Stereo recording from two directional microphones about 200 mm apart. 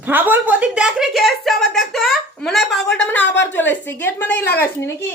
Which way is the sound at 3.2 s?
65° left (ahead or behind).